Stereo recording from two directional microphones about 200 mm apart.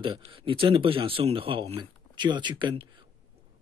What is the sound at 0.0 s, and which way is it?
Speech, 25° right (ahead or behind).